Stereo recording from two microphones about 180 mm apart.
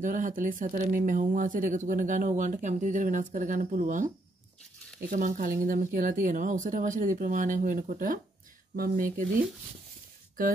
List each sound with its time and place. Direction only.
0.0 s speech: 45° right (ahead or behind)
5.1 s speech: 45° right (ahead or behind)